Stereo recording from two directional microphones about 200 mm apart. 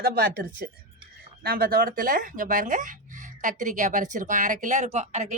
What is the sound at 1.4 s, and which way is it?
Speech, 50° right (ahead or behind).